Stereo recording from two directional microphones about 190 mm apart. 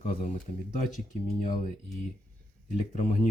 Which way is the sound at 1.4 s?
45° left (ahead or behind).